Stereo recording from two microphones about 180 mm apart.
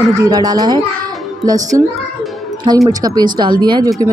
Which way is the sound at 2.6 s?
20° right (ahead or behind).